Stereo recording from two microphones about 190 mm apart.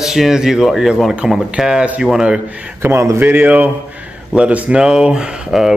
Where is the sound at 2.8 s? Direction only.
15° right (ahead or behind).